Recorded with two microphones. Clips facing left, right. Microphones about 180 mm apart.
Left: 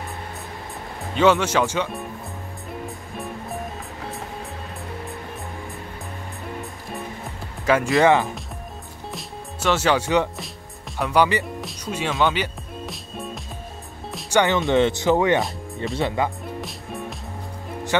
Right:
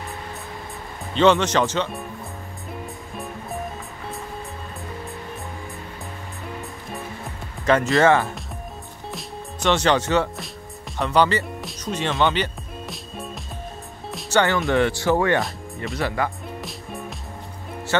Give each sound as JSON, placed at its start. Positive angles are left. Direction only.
{"t": 1.1, "sound": "speech", "side_deg": 10}
{"t": 7.6, "sound": "speech", "side_deg": 5}
{"t": 9.1, "sound": "music", "side_deg": 5}
{"t": 11.0, "sound": "speech", "side_deg": 10}
{"t": 11.8, "sound": "music", "side_deg": 10}
{"t": 14.3, "sound": "speech", "side_deg": 15}